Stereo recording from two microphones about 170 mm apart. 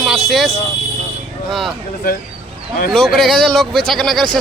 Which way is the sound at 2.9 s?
Centre (ahead or behind).